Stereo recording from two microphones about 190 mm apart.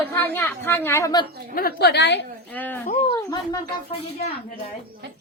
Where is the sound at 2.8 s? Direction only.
35° left (ahead or behind).